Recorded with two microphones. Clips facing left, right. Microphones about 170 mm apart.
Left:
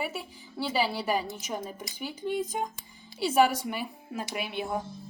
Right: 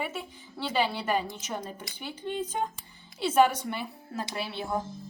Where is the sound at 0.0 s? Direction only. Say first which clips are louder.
Even; 5° left (ahead or behind).